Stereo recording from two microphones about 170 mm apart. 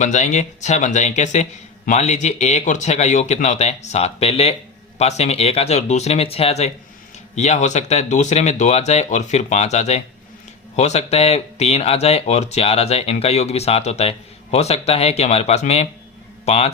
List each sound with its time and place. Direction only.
0.0 s speech: 45° left (ahead or behind)